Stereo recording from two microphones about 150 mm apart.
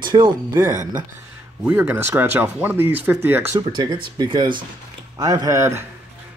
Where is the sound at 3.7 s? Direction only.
30° right (ahead or behind).